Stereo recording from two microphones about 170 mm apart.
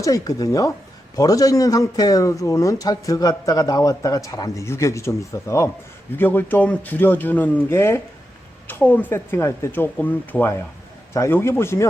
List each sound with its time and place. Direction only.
0.0 s speech: 20° left (ahead or behind)